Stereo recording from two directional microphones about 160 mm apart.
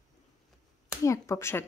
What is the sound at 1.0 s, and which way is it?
Speech, 20° left (ahead or behind).